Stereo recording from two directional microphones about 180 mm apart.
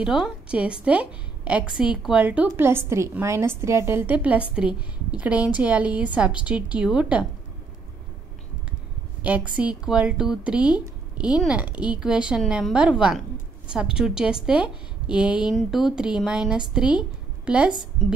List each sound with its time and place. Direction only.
0.0 s a woman's voice: 5° right (ahead or behind)
9.2 s speech: 10° right (ahead or behind)